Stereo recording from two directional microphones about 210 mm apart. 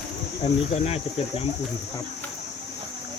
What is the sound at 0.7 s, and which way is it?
Speech, 30° left (ahead or behind).